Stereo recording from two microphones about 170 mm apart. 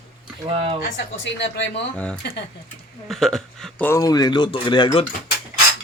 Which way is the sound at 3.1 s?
Centre (ahead or behind).